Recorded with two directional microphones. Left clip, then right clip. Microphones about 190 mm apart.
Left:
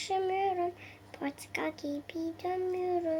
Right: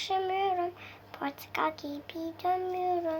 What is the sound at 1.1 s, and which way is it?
A woman's voice, 30° right (ahead or behind).